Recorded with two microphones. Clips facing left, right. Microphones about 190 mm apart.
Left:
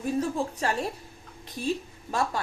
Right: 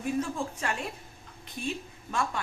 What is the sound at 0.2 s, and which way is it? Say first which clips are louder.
A woman's voice: left 4 dB; 35° left (ahead or behind).